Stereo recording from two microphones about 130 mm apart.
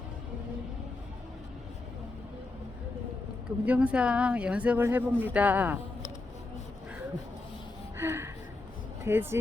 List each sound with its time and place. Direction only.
3.7 s speech: 10° right (ahead or behind)
7.9 s a sound: 20° right (ahead or behind)
9.0 s speech: 20° right (ahead or behind)